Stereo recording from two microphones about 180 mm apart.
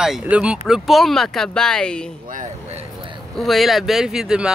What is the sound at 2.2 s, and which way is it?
Vehicle, 40° right (ahead or behind).